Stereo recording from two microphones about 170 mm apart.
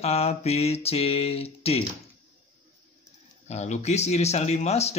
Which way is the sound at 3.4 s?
40° left (ahead or behind).